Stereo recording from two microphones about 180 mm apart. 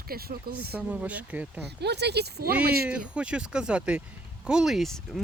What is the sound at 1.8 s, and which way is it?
Speech, 70° right (ahead or behind).